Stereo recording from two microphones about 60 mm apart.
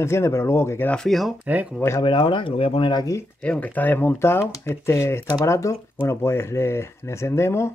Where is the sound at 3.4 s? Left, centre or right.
Left.